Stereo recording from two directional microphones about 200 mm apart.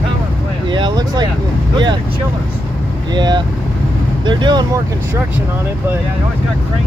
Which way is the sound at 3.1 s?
20° right (ahead or behind).